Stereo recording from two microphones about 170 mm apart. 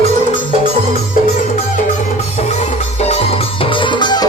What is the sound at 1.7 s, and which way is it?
Music, 40° left (ahead or behind).